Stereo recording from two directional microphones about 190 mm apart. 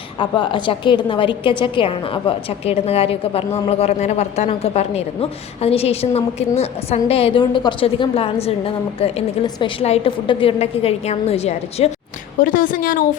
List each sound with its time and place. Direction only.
0.2 s a woman's voice: 25° left (ahead or behind)
12.4 s a woman's voice: 45° left (ahead or behind)